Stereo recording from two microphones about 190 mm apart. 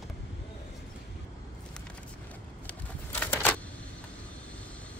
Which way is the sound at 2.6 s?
10° left (ahead or behind).